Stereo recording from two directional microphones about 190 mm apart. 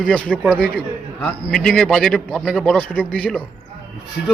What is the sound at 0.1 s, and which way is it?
A man's voice, 5° left (ahead or behind).